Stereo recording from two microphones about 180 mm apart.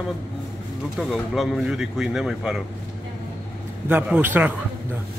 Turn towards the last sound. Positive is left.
turn(degrees=-10)  # may be behind; listen again after turning